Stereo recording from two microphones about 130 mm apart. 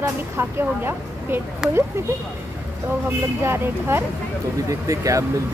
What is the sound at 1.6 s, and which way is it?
Speech, 5° right (ahead or behind).